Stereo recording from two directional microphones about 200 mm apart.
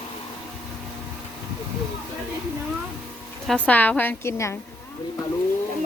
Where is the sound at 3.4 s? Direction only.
5° left (ahead or behind).